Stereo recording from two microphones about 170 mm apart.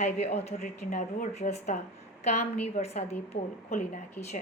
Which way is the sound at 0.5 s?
50° left (ahead or behind).